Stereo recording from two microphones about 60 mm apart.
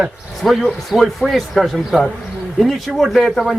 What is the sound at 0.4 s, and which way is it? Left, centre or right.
A man's voice, centre.